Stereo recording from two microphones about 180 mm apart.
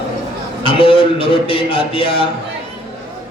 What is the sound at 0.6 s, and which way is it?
A man's voice, 30° left (ahead or behind).